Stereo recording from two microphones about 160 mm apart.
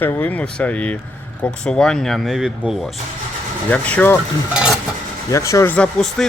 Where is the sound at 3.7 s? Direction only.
10° left (ahead or behind).